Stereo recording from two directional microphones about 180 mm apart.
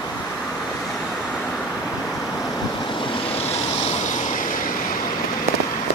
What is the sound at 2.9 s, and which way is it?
Vehicle, 35° left (ahead or behind).